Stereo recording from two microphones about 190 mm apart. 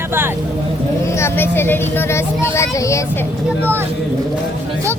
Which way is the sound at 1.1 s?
15° left (ahead or behind).